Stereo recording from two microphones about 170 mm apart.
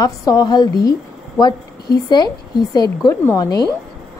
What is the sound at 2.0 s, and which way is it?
A woman's voice, 25° left (ahead or behind).